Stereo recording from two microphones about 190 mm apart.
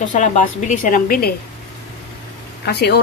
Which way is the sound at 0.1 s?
40° left (ahead or behind).